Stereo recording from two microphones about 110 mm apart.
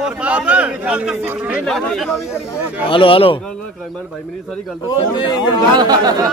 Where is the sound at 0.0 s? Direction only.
10° right (ahead or behind).